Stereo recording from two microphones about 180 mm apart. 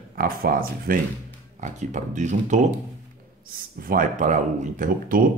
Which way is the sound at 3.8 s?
45° right (ahead or behind).